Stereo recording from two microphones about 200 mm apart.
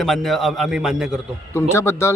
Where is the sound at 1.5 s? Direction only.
10° left (ahead or behind).